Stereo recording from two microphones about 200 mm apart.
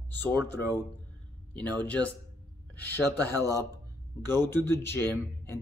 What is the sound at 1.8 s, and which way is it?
Speech, 5° left (ahead or behind).